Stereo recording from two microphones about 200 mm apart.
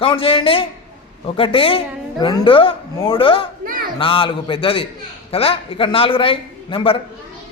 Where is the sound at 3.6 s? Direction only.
45° right (ahead or behind).